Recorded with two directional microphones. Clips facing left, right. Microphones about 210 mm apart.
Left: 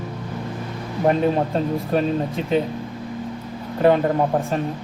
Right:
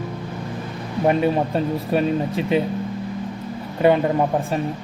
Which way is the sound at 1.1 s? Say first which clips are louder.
Even; 5° right (ahead or behind).